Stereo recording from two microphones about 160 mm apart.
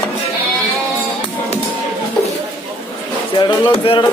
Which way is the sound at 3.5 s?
30° left (ahead or behind).